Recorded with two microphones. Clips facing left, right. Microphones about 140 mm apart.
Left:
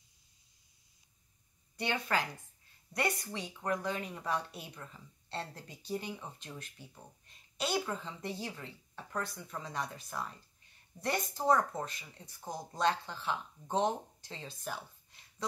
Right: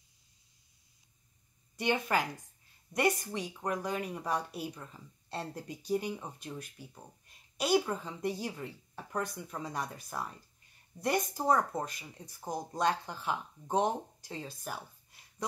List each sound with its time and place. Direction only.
1.8 s speech: 15° right (ahead or behind)
3.3 s speech: 10° right (ahead or behind)